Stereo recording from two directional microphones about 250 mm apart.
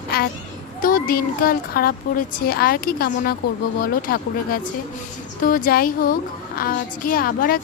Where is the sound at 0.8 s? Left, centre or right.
Left.